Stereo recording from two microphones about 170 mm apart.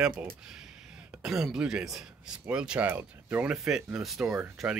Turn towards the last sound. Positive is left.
turn(degrees=-5)  # may be behind; listen again after turning